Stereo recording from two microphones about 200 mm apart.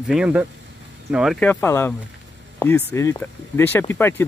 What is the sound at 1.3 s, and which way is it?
Speech, 10° left (ahead or behind).